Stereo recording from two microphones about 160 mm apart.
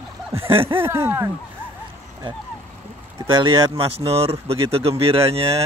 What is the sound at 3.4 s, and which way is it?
Speech, 35° right (ahead or behind).